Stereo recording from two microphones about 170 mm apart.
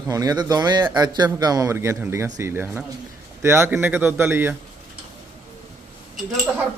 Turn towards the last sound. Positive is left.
turn(degrees=-5)  # may be behind; listen again after turning